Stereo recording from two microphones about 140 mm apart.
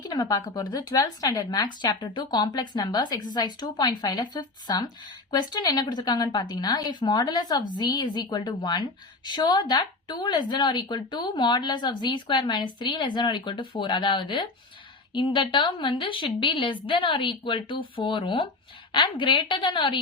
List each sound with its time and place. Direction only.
0.1 s a woman's voice: 25° left (ahead or behind)